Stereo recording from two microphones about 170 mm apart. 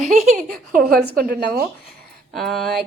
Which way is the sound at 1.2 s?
65° right (ahead or behind).